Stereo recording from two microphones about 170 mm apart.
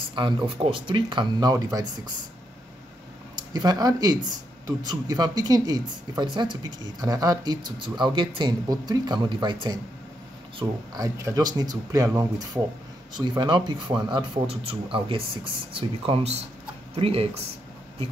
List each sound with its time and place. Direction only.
0.1 s speech: 30° right (ahead or behind)
3.5 s speech: 25° right (ahead or behind)